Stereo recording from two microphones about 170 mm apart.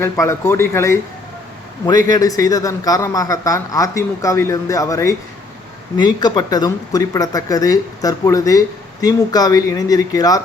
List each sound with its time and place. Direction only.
0.0 s speech: 15° left (ahead or behind)
2.0 s speech: 20° left (ahead or behind)